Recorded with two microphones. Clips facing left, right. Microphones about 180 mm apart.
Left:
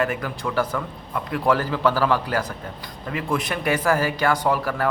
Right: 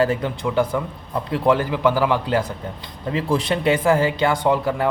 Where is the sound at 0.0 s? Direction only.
25° right (ahead or behind).